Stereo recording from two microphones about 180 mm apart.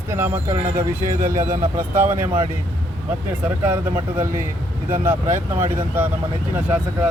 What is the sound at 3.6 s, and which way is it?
Speech, 10° right (ahead or behind).